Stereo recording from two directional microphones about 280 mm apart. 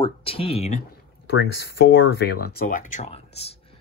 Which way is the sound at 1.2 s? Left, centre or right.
Left.